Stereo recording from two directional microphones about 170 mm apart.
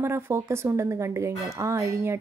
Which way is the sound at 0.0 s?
15° right (ahead or behind).